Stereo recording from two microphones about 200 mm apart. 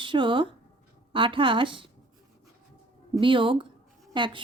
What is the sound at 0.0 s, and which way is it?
Speech, 25° right (ahead or behind).